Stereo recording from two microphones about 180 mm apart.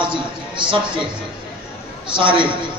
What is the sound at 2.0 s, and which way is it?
Speech, 25° right (ahead or behind).